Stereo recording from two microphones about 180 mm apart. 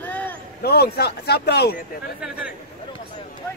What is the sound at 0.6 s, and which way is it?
A man's voice, 60° left (ahead or behind).